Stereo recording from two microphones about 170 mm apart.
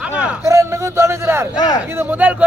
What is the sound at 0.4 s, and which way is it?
A man's voice, 15° right (ahead or behind).